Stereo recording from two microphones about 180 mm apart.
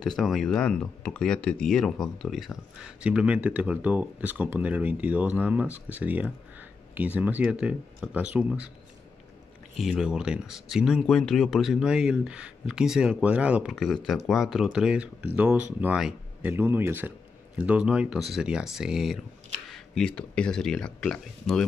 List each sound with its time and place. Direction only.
0.0 s speech: centre (ahead or behind)
9.8 s speech: centre (ahead or behind)